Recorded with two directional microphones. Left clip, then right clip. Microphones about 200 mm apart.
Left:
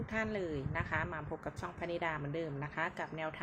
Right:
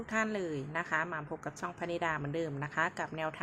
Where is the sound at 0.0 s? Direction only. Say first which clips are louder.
Right 4 dB; 20° right (ahead or behind).